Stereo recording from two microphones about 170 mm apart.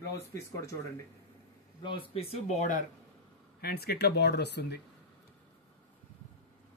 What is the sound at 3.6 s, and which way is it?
Speech, 65° left (ahead or behind).